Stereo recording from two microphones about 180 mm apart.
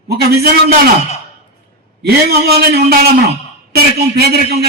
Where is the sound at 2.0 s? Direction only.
60° right (ahead or behind).